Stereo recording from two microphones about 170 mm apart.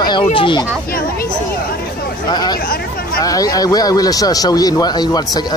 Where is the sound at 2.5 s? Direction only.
60° left (ahead or behind).